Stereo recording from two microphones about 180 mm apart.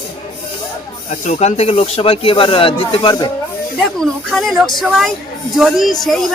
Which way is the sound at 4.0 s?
Centre (ahead or behind).